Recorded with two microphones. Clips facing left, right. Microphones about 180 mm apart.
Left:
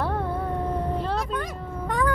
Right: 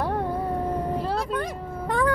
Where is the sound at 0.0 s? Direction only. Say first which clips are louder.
Right 1 dB; 15° right (ahead or behind).